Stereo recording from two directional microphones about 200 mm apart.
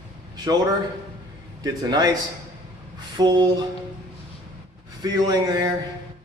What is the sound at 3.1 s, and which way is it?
Speech, 20° right (ahead or behind).